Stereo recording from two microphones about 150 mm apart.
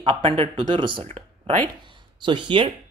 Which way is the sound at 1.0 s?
50° right (ahead or behind).